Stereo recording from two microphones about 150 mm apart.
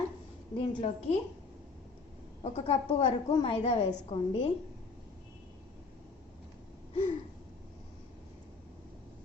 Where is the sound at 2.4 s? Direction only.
45° left (ahead or behind).